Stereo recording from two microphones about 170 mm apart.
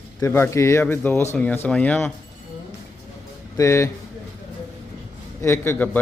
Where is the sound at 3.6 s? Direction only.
15° left (ahead or behind).